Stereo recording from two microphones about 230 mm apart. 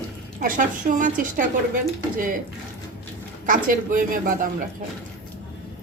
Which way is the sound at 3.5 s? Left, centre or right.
Right.